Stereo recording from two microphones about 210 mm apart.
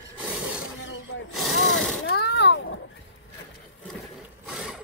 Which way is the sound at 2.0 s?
50° left (ahead or behind).